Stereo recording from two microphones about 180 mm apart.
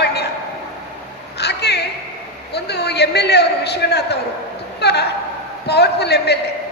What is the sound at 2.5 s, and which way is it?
A man's voice, 65° left (ahead or behind).